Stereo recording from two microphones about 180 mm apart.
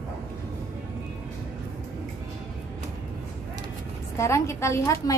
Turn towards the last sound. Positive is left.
turn(degrees=15)  # may be behind; listen again after turning